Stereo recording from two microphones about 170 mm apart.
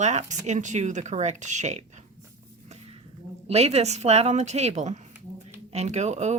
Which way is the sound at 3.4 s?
40° right (ahead or behind).